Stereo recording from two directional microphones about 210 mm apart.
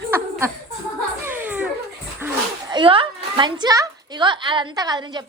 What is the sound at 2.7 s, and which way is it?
A woman's voice, 25° right (ahead or behind).